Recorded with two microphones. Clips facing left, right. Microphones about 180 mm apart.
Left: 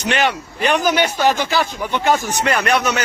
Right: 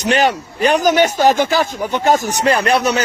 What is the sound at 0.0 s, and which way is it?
Speech, 40° right (ahead or behind).